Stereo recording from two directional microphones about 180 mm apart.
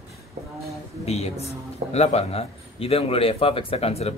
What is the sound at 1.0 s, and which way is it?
A man's voice, 35° left (ahead or behind).